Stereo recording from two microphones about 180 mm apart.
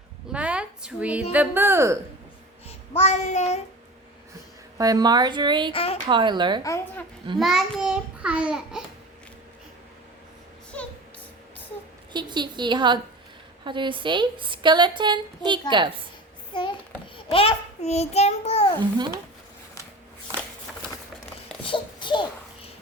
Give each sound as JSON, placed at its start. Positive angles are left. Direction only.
{"t": 0.3, "sound": "a child's voice", "side_deg": -5}
{"t": 3.0, "sound": "child singing", "side_deg": 40}
{"t": 4.8, "sound": "a woman's voice", "side_deg": -20}
{"t": 5.7, "sound": "child singing", "side_deg": 35}
{"t": 6.1, "sound": "a woman's voice", "side_deg": -25}
{"t": 6.6, "sound": "speech", "side_deg": 15}
{"t": 7.3, "sound": "a child's voice", "side_deg": 0}
{"t": 12.1, "sound": "a woman's voice", "side_deg": -25}
{"t": 16.5, "sound": "a child's voice", "side_deg": 25}
{"t": 21.6, "sound": "babbling", "side_deg": 25}